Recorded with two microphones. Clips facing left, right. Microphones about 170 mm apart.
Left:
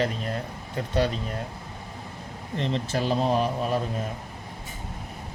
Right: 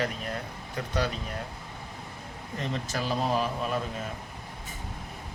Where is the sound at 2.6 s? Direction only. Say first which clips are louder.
Left 5 dB; 30° left (ahead or behind).